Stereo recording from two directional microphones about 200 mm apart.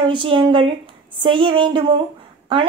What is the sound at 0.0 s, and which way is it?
A woman's voice, 25° right (ahead or behind).